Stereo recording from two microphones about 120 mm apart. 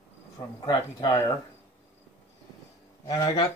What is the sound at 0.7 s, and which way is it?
Speech, 40° left (ahead or behind).